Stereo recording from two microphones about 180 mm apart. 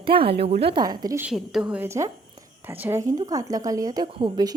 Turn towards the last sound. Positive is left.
turn(degrees=-25)  # may be behind; listen again after turning